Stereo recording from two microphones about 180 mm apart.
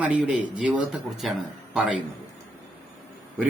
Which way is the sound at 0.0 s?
5° right (ahead or behind).